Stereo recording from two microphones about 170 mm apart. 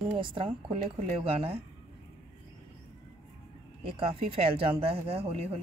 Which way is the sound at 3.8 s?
30° right (ahead or behind).